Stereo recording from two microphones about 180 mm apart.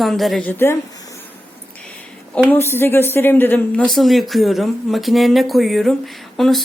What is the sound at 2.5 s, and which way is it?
Speech, 15° left (ahead or behind).